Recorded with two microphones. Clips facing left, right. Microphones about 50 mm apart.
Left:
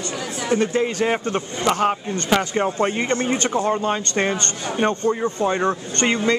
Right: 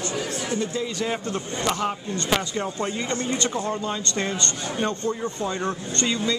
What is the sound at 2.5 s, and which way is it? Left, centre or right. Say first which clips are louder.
Speech: left 7 dB; left.